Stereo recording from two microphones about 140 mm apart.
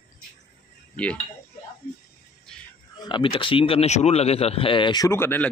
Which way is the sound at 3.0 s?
35° left (ahead or behind).